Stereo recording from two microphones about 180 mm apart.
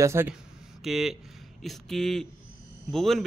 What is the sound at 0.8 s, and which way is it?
A man's voice, centre (ahead or behind).